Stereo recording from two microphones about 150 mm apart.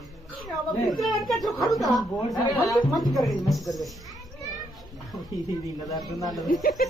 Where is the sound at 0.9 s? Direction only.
Centre (ahead or behind).